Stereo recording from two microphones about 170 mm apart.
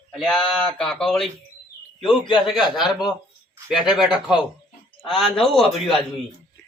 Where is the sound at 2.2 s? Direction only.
30° left (ahead or behind).